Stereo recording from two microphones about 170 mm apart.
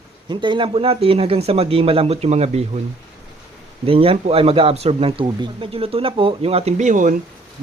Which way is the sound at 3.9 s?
35° right (ahead or behind).